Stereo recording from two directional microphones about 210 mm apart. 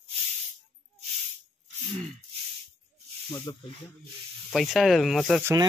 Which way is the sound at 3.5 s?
20° left (ahead or behind).